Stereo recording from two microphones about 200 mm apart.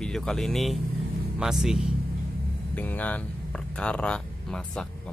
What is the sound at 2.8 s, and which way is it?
Speech, 10° left (ahead or behind).